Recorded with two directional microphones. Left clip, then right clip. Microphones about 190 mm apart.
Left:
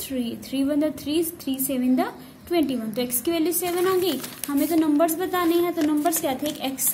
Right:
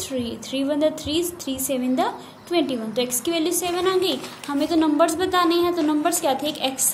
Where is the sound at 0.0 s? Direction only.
20° left (ahead or behind).